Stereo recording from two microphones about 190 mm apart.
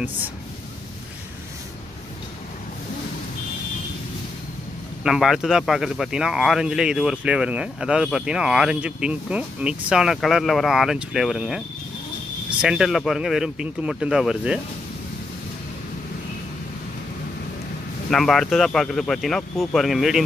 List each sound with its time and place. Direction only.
5.0 s speech: centre (ahead or behind)
18.1 s speech: centre (ahead or behind)